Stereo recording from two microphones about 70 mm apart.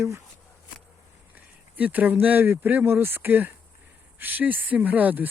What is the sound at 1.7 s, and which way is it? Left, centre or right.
Speech, right.